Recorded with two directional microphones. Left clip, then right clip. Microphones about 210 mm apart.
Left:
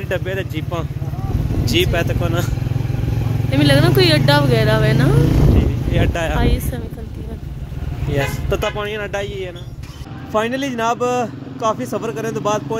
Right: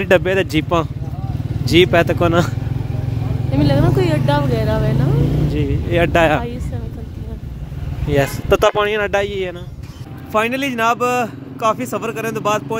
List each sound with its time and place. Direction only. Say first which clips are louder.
0.0 s speech: right 9 dB; 50° right (ahead or behind)
3.5 s speech: left 2 dB; 5° right (ahead or behind)
5.6 s a sound: right 4 dB; 45° right (ahead or behind)
8.1 s speech: right 5 dB; 50° right (ahead or behind)
10.3 s speech: right 2 dB; 5° right (ahead or behind)